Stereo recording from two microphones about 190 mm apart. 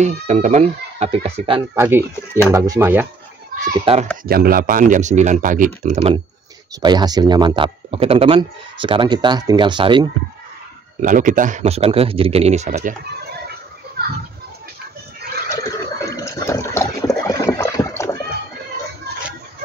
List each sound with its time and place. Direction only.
0.0 s a man's voice: 40° right (ahead or behind)
1.8 s speech: 10° right (ahead or behind)
3.6 s a man's voice: 35° right (ahead or behind)
4.3 s speech: 50° right (ahead or behind); by 10.0 s 25° right (ahead or behind)
11.0 s a man's voice: 45° right (ahead or behind)
15.5 s water: 15° left (ahead or behind)